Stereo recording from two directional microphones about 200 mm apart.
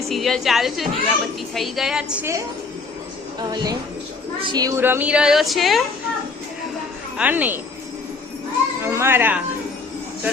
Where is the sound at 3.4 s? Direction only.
20° right (ahead or behind); by 5.8 s centre (ahead or behind).